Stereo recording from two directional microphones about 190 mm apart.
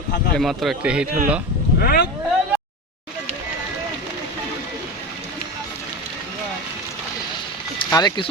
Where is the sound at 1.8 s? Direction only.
50° left (ahead or behind).